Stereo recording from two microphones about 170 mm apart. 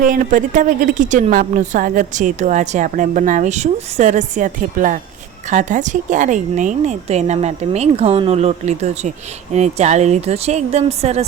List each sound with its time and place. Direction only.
0.0 s a woman's voice: 50° right (ahead or behind)